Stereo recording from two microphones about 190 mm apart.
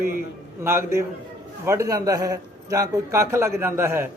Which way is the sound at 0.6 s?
15° right (ahead or behind).